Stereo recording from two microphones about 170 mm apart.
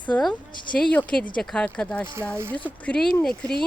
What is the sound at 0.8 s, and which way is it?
Speech, 10° left (ahead or behind).